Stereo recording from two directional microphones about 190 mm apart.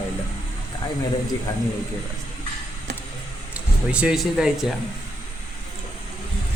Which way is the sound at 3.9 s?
5° right (ahead or behind).